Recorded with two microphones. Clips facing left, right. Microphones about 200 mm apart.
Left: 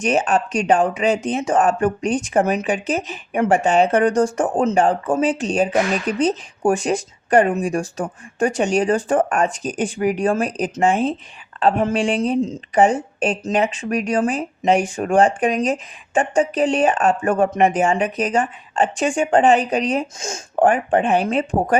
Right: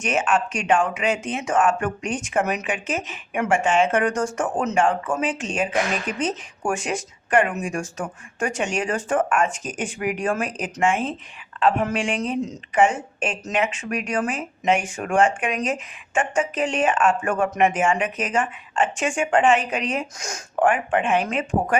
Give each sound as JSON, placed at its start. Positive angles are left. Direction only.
{"t": 0.0, "sound": "speech", "side_deg": 35}